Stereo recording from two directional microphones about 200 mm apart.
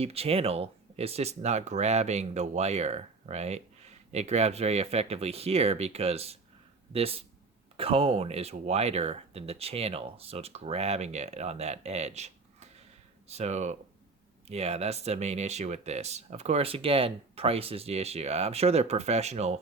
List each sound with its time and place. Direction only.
0.0 s speech: 30° right (ahead or behind)